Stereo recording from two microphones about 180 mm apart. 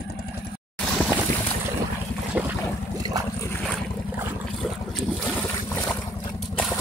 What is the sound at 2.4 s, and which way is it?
Boat, 5° right (ahead or behind).